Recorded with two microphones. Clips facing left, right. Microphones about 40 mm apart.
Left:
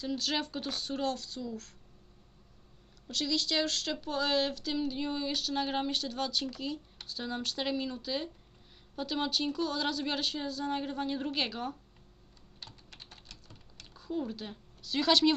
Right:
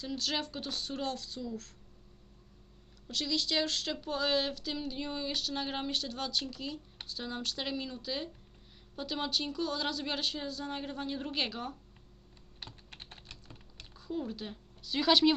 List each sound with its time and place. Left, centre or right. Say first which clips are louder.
0.0 s speech: left 2 dB; centre
3.1 s speech: left 1 dB; centre
12.9 s typing: right 2 dB; right
13.9 s a woman's voice: left 2 dB; centre